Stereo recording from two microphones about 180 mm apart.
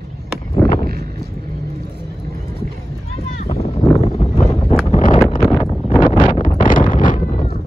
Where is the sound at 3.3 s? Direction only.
35° left (ahead or behind).